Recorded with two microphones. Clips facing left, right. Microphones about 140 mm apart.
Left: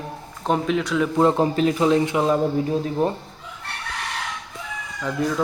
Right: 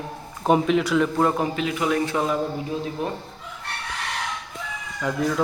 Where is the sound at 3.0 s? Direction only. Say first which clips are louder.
Left 7 dB; 35° left (ahead or behind).